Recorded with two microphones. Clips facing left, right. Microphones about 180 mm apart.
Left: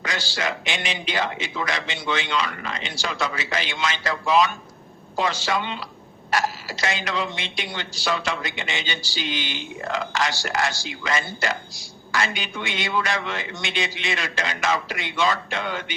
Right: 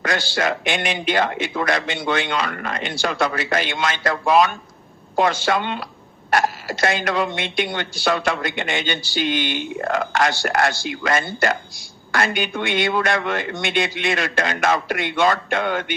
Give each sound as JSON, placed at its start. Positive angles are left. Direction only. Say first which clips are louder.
{"t": 0.0, "sound": "speech", "louder": "right 6 dB", "side_deg": -55}